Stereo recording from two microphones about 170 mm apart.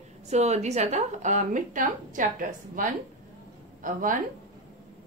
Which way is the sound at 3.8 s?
50° right (ahead or behind).